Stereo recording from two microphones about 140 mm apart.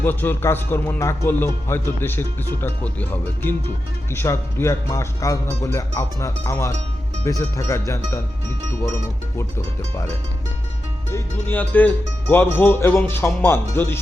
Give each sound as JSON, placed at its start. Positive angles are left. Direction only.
{"t": 0.0, "sound": "speech", "side_deg": 15}
{"t": 11.1, "sound": "speech", "side_deg": 15}